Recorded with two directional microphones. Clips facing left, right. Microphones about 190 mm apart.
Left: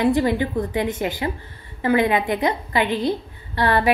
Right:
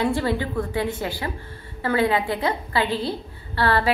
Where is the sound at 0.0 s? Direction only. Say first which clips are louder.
Left 4 dB; 15° left (ahead or behind).